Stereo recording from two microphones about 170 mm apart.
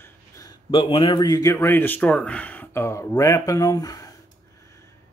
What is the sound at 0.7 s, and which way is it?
Speech, 30° left (ahead or behind).